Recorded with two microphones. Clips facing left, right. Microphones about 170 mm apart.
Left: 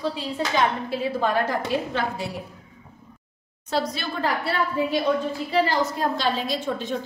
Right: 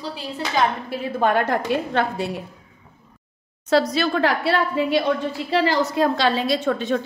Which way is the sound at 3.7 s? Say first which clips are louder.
Right 8 dB; 85° right.